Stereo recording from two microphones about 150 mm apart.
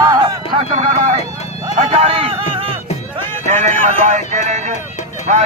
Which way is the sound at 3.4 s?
50° right (ahead or behind).